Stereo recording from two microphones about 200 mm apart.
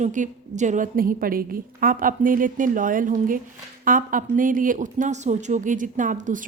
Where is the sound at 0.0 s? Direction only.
40° right (ahead or behind).